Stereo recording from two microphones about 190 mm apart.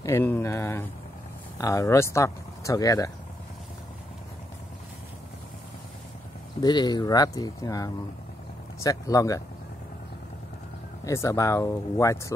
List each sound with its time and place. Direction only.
0.0 s speech: 10° left (ahead or behind)
6.6 s speech: 20° left (ahead or behind)
11.1 s speech: 15° left (ahead or behind)